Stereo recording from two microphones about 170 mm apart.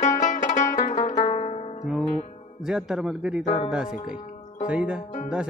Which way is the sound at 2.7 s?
5° right (ahead or behind).